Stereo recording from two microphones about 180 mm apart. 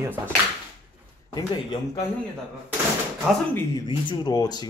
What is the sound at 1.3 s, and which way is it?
Speech, 20° left (ahead or behind).